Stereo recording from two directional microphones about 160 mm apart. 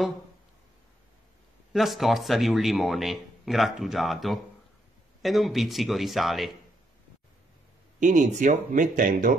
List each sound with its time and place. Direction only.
1.7 s speech: centre (ahead or behind)
8.0 s speech: 50° right (ahead or behind)